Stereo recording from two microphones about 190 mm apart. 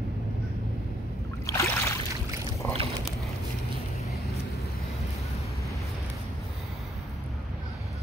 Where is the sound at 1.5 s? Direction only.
15° left (ahead or behind).